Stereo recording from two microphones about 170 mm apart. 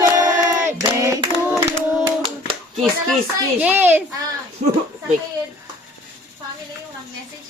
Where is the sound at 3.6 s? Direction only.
10° right (ahead or behind).